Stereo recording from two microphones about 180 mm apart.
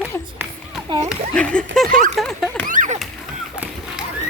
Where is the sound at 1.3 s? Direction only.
5° left (ahead or behind).